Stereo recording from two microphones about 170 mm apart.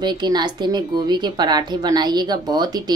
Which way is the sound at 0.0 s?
25° right (ahead or behind).